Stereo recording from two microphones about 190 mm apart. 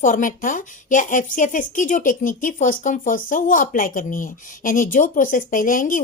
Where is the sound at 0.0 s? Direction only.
45° left (ahead or behind).